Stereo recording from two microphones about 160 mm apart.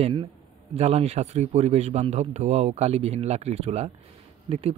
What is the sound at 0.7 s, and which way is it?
A man's voice, 40° right (ahead or behind).